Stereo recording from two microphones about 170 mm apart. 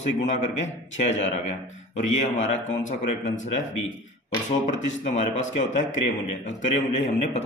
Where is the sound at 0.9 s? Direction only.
45° left (ahead or behind).